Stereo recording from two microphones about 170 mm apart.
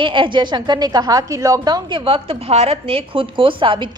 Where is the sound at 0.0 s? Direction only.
30° right (ahead or behind).